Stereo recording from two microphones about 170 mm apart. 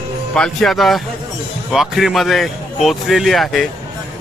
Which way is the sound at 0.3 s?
5° left (ahead or behind).